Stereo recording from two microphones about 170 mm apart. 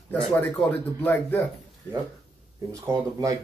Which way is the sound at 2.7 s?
20° right (ahead or behind).